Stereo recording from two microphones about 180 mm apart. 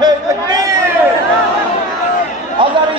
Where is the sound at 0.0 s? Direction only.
20° right (ahead or behind).